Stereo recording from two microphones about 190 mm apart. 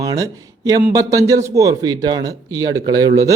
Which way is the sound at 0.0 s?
20° right (ahead or behind).